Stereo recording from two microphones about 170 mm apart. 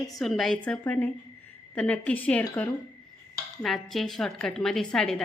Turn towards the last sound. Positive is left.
turn(degrees=5)  # may be behind; listen again after turning